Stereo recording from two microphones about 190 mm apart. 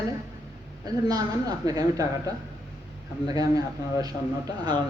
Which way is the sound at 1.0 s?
20° right (ahead or behind).